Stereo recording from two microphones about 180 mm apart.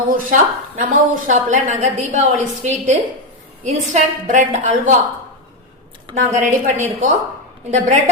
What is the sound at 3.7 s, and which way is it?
A woman's voice, 40° right (ahead or behind).